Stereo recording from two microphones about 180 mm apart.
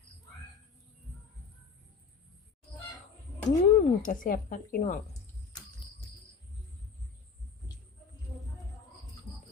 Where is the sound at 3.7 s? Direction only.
45° left (ahead or behind).